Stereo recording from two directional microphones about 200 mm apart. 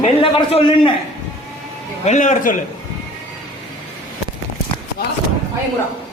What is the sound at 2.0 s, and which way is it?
Speech, 35° left (ahead or behind).